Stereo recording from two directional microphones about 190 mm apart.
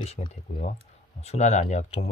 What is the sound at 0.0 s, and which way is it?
Speech, 35° left (ahead or behind).